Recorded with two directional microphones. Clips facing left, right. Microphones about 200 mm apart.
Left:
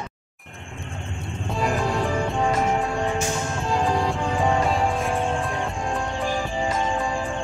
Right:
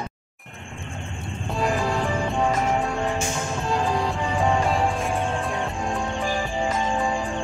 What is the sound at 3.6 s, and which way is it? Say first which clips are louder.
Music: left 1 dB; centre (ahead or behind).